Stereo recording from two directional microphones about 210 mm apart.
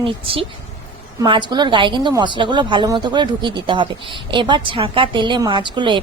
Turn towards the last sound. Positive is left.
turn(degrees=-20)  # may be behind; listen again after turning